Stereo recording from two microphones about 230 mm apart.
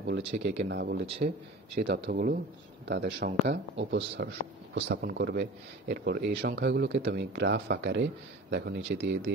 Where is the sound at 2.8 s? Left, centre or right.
Right.